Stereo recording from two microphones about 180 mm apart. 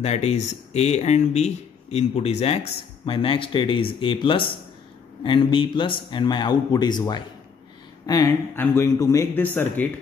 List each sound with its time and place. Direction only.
0.0 s speech: 35° left (ahead or behind); by 9.8 s 10° left (ahead or behind)